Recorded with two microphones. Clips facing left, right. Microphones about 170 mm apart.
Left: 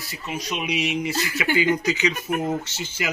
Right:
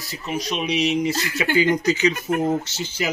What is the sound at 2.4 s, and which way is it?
Speech, 30° right (ahead or behind).